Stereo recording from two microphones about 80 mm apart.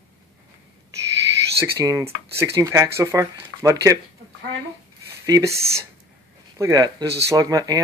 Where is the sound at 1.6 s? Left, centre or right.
Right.